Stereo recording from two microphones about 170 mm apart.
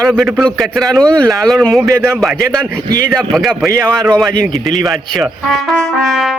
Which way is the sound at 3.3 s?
Centre (ahead or behind).